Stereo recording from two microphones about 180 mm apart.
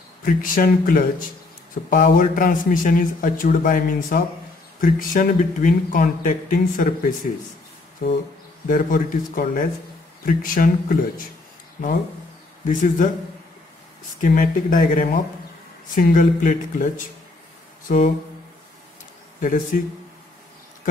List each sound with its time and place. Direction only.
0.2 s speech: 50° left (ahead or behind)
8.6 s speech: 50° left (ahead or behind)
12.6 s speech: 45° left (ahead or behind)
14.2 s speech: 50° left (ahead or behind)
19.4 s speech: 45° left (ahead or behind)